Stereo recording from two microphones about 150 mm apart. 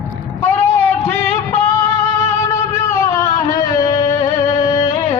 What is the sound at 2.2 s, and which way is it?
Music, 20° left (ahead or behind).